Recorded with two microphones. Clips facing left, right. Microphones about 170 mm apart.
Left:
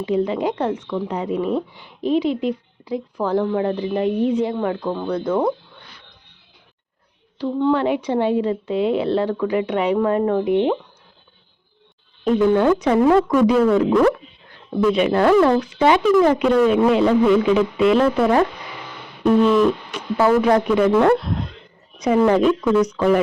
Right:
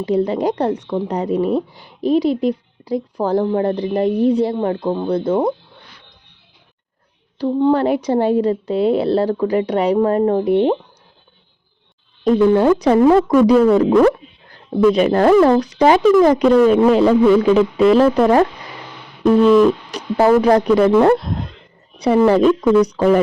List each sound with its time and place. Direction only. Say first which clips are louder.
0.0 s speech: right 3 dB; 40° right (ahead or behind)
7.3 s speech: right 4 dB; 40° right (ahead or behind)
12.2 s speech: right 3 dB; 35° right (ahead or behind)
14.9 s speech: right 1 dB; 40° right (ahead or behind)
19.9 s a woman's voice: right 3 dB; 40° right (ahead or behind)